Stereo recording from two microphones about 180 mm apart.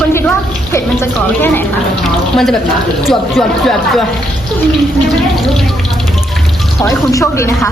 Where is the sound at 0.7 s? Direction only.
15° left (ahead or behind).